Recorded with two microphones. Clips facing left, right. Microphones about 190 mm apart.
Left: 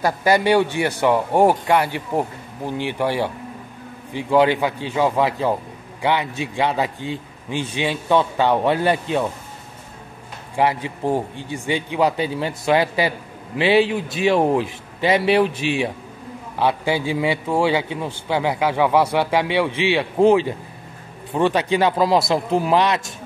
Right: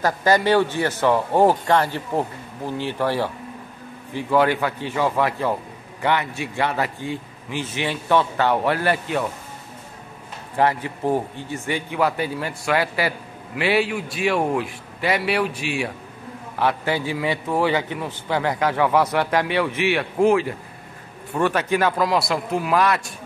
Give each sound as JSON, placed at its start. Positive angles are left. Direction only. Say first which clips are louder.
{"t": 0.0, "sound": "a man's voice", "louder": "left 1 dB", "side_deg": 10}
{"t": 10.5, "sound": "a man's voice", "louder": "left 1 dB", "side_deg": 15}